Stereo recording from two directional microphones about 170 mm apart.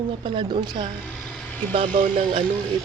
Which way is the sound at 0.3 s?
25° right (ahead or behind).